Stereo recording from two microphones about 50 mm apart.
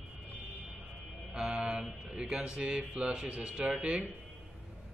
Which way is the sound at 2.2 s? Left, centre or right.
Centre.